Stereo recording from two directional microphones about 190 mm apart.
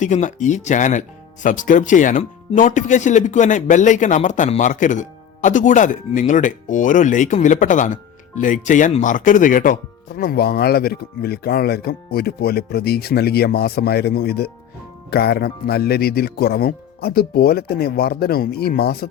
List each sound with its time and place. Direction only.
0.0 s speech: 40° left (ahead or behind)
10.2 s speech: 55° left (ahead or behind)